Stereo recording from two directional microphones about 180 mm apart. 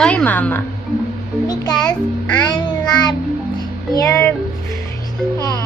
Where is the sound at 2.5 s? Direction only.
25° left (ahead or behind).